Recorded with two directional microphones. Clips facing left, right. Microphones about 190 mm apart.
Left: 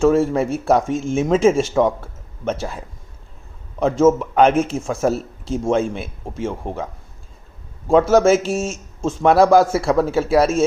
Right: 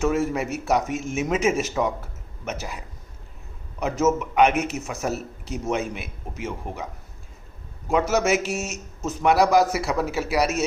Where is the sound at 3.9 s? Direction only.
30° left (ahead or behind).